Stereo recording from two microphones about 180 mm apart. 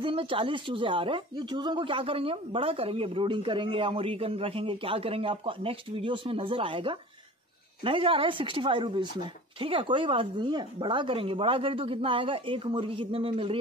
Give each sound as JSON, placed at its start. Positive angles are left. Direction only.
{"t": 0.0, "sound": "speech", "side_deg": -30}